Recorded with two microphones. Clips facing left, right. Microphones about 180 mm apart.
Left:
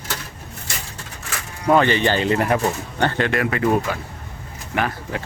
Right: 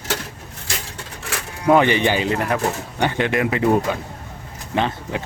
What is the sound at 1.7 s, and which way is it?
Speech, 15° right (ahead or behind).